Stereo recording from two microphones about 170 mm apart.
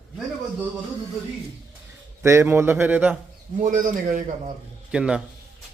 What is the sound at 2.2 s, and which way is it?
Speech, 15° right (ahead or behind).